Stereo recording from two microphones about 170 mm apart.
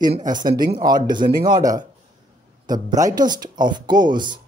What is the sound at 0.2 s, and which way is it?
Speech, 25° right (ahead or behind).